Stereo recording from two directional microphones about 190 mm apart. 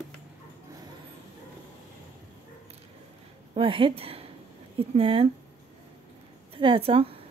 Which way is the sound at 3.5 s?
25° right (ahead or behind).